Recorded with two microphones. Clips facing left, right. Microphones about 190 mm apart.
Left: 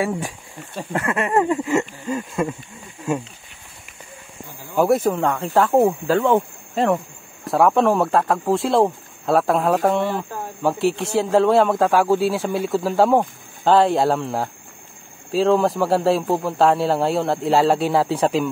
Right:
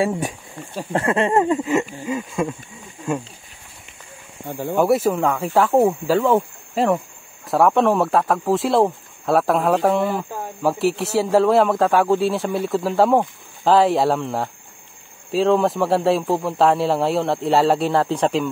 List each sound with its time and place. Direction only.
0.0 s speech: 20° right (ahead or behind)
2.0 s a man's voice: centre (ahead or behind)
4.5 s speech: 65° right (ahead or behind)
4.8 s a man's voice: 5° right (ahead or behind)